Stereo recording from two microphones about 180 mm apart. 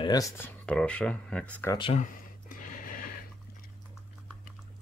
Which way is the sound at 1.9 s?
50° left (ahead or behind).